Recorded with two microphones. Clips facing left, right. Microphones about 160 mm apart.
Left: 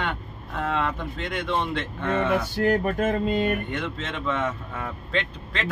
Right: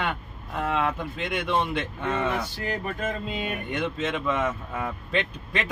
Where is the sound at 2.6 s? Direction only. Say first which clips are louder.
Left 8 dB; 45° left (ahead or behind).